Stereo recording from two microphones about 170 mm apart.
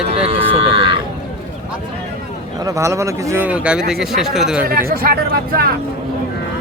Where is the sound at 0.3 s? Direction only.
35° right (ahead or behind).